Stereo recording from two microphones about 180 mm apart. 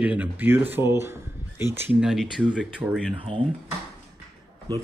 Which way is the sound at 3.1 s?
30° right (ahead or behind).